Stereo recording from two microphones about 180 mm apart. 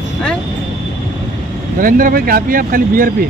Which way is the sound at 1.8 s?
50° right (ahead or behind).